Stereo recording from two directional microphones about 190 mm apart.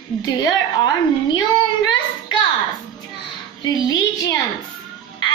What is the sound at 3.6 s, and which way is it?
Speech, 20° left (ahead or behind).